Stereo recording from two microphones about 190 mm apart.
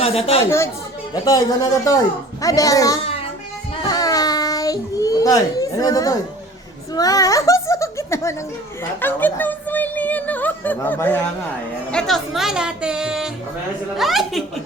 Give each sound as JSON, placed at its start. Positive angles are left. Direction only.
{"t": 0.0, "sound": "speech", "side_deg": 30}
{"t": 1.1, "sound": "a man's voice", "side_deg": 20}
{"t": 3.0, "sound": "a sound", "side_deg": 30}
{"t": 3.8, "sound": "child singing", "side_deg": 20}
{"t": 6.9, "sound": "a child's voice", "side_deg": 20}